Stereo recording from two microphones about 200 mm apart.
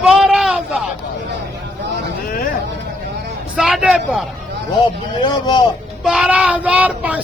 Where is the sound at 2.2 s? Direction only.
45° left (ahead or behind).